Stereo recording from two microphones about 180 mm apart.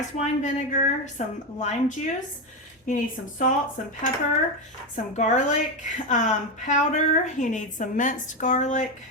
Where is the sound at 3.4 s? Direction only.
45° left (ahead or behind).